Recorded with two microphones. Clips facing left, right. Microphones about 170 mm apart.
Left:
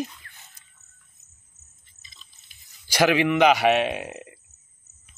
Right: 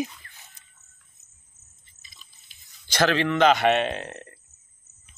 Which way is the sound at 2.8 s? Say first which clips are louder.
Left 2 dB; 10° left (ahead or behind).